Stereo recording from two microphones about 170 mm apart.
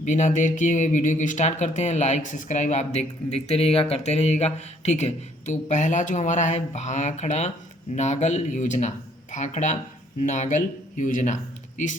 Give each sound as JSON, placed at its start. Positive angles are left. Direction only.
{"t": 0.0, "sound": "speech", "side_deg": 45}